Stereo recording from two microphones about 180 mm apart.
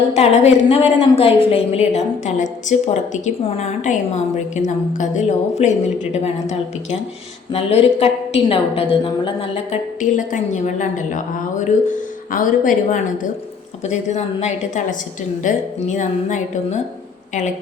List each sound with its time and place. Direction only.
0.1 s a woman's voice: 35° left (ahead or behind)